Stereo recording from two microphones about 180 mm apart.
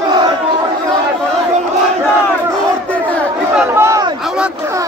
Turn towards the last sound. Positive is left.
turn(degrees=-15)  # may be behind; listen again after turning